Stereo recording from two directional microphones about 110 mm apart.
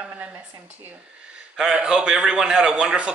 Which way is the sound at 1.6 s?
5° right (ahead or behind).